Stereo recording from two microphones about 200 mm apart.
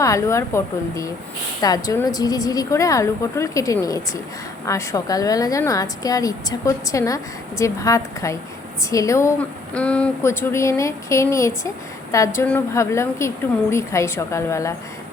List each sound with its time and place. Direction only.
0.0 s a woman's voice: 15° left (ahead or behind)